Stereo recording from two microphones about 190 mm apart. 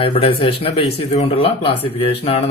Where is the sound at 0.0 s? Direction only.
30° left (ahead or behind).